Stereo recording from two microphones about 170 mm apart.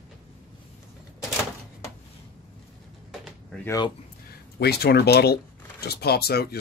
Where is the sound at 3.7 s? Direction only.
25° left (ahead or behind).